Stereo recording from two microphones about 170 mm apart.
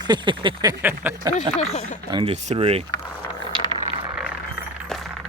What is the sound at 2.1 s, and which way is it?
Speech, 35° right (ahead or behind).